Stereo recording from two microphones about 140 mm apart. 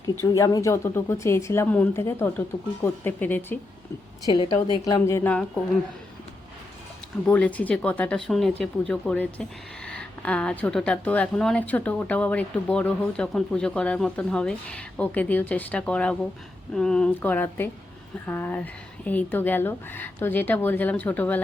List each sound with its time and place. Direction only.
0.0 s speech: 25° left (ahead or behind)
4.3 s a woman's voice: 40° left (ahead or behind)
5.0 s speech: 20° left (ahead or behind)
7.3 s speech: 10° left (ahead or behind)